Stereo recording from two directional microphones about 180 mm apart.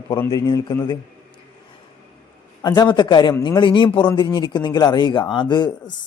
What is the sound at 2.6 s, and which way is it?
A man's voice, 20° left (ahead or behind).